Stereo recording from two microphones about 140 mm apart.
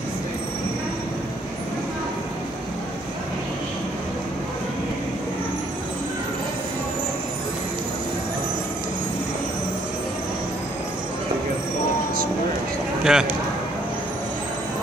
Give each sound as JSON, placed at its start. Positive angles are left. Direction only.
{"t": 13.0, "sound": "speech", "side_deg": -5}